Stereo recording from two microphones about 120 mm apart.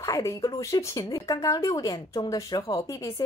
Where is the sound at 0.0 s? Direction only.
25° left (ahead or behind).